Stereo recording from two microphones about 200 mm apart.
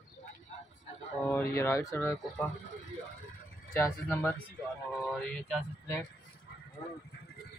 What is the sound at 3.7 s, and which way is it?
Speech, 10° left (ahead or behind).